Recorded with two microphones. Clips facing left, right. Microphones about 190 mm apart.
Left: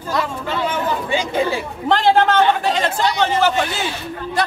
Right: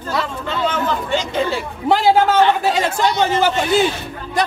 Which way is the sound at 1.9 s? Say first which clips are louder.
Right 1 dB; 10° right (ahead or behind).